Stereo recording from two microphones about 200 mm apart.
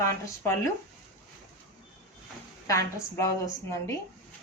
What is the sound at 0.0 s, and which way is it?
Speech, 15° left (ahead or behind).